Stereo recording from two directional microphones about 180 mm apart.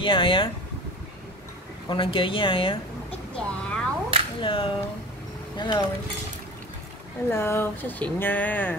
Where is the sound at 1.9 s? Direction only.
30° left (ahead or behind).